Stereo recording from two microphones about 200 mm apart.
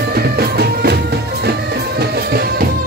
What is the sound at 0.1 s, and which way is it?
Music, 50° right (ahead or behind).